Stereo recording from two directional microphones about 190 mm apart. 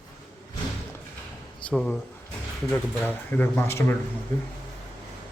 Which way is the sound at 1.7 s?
5° left (ahead or behind).